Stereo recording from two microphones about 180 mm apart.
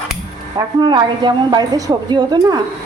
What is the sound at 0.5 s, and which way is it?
A woman's voice, 25° right (ahead or behind).